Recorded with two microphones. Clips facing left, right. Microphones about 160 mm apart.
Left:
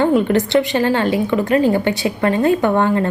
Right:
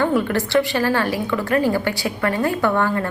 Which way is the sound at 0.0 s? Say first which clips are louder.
Left 5 dB; 20° left (ahead or behind).